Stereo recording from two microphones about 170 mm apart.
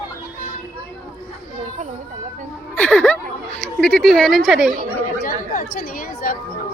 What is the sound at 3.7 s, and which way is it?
Speech, 5° left (ahead or behind).